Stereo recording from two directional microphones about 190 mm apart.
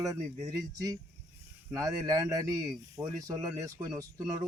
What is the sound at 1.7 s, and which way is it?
A man's voice, 20° right (ahead or behind).